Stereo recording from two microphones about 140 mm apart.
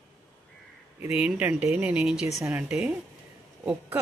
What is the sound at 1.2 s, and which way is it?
Speech, 10° right (ahead or behind).